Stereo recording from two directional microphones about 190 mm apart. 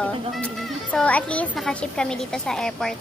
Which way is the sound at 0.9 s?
5° left (ahead or behind).